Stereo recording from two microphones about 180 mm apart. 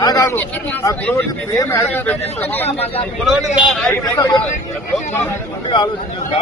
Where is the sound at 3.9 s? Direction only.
20° left (ahead or behind).